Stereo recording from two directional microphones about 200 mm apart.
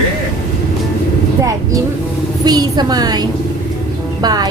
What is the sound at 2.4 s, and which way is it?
Speech, 20° right (ahead or behind).